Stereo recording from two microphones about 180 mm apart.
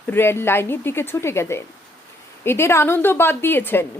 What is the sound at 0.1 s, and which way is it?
A woman's voice, 10° left (ahead or behind).